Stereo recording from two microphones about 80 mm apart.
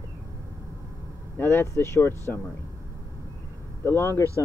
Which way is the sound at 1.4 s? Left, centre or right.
Left.